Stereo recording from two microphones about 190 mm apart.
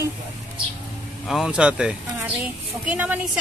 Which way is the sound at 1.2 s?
Centre (ahead or behind).